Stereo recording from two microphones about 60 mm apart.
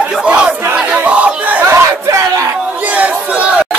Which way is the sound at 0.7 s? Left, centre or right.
Centre.